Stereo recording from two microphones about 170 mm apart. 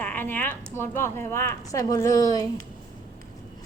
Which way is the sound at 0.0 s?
10° left (ahead or behind).